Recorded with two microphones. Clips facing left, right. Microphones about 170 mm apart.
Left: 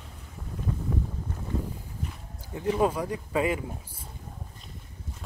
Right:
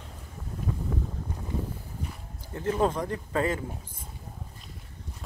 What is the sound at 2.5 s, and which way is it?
Speech, 15° left (ahead or behind).